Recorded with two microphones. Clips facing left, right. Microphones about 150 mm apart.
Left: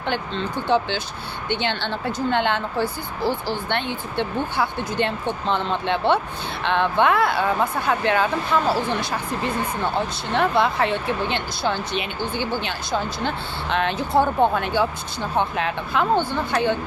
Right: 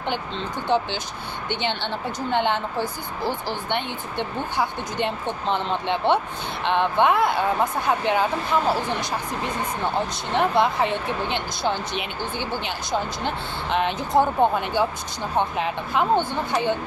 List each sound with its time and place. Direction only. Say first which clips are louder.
0.7 s a woman's voice: left 1 dB; 15° right (ahead or behind)
10.3 s a woman's voice: even; 20° right (ahead or behind)
13.2 s a woman's voice: left 1 dB; 15° right (ahead or behind)
15.9 s a woman's voice: even; 20° right (ahead or behind)